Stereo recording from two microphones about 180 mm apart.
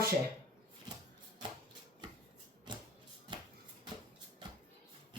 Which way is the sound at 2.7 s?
25° right (ahead or behind).